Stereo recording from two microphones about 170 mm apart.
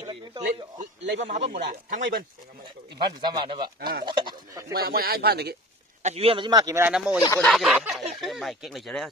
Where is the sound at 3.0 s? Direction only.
25° right (ahead or behind).